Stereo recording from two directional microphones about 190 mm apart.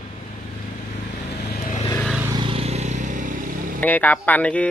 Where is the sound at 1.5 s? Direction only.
50° left (ahead or behind).